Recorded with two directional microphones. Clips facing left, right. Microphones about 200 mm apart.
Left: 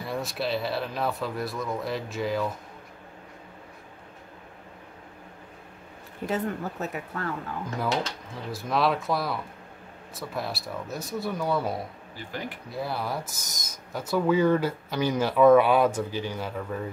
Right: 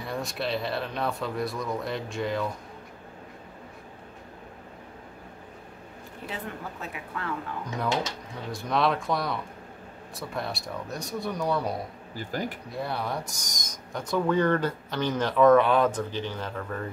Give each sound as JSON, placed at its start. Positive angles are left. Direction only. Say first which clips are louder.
{"t": 0.0, "sound": "speech", "louder": "left 1 dB", "side_deg": 0}
{"t": 6.2, "sound": "speech", "louder": "left 8 dB", "side_deg": 45}
{"t": 7.7, "sound": "speech", "louder": "even", "side_deg": 0}
{"t": 12.2, "sound": "speech", "louder": "right 4 dB", "side_deg": -40}
{"t": 12.7, "sound": "speech", "louder": "left 2 dB", "side_deg": 0}